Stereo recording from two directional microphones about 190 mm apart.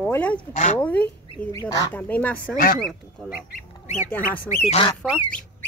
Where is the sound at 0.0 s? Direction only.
5° left (ahead or behind).